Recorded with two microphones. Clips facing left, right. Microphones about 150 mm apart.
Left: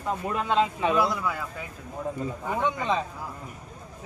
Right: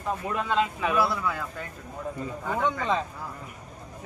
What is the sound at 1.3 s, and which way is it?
Speech, 5° left (ahead or behind).